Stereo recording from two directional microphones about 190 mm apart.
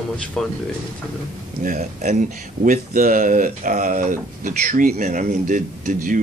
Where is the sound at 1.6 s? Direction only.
45° right (ahead or behind).